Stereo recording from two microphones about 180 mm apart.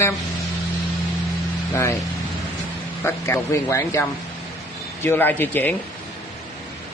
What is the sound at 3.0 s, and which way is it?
Speech, 15° left (ahead or behind).